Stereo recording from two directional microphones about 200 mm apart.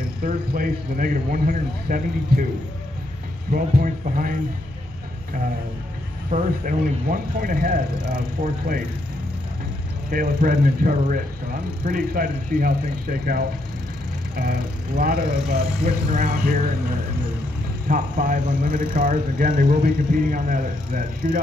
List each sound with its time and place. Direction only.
0.2 s speech: 45° right (ahead or behind)
3.5 s speech: 45° right (ahead or behind)
6.3 s speech: 45° right (ahead or behind)
10.1 s speech: 45° right (ahead or behind)
17.8 s speech: 45° right (ahead or behind)